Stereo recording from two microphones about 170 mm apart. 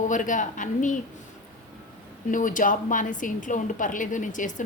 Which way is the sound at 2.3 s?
50° left (ahead or behind).